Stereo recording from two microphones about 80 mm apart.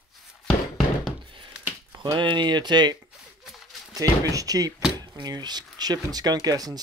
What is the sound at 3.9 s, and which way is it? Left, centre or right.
Speech, right.